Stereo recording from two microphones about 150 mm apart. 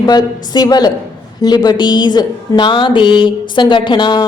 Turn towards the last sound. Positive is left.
turn(degrees=30)  # may be behind; listen again after turning